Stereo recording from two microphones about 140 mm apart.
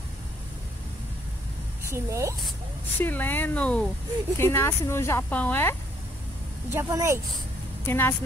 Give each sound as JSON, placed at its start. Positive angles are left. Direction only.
{"t": 1.9, "sound": "speech", "side_deg": -20}
{"t": 3.0, "sound": "speech", "side_deg": 15}
{"t": 6.7, "sound": "speech", "side_deg": -20}
{"t": 7.8, "sound": "a woman's voice", "side_deg": 15}